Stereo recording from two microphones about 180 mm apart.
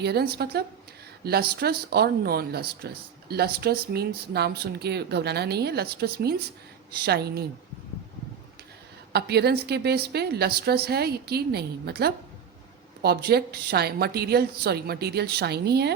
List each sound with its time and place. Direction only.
0.0 s speech: 65° right (ahead or behind)
9.1 s speech: 65° right (ahead or behind)